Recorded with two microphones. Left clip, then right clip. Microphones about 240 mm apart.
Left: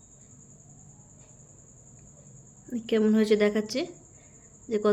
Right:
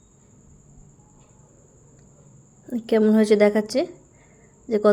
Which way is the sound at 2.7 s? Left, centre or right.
Right.